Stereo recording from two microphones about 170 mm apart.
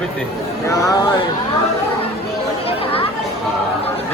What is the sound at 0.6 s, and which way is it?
Speech, 20° left (ahead or behind).